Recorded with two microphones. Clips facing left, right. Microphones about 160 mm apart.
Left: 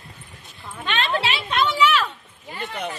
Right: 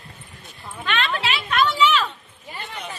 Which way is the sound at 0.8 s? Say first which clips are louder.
Left 1 dB; 30° left (ahead or behind).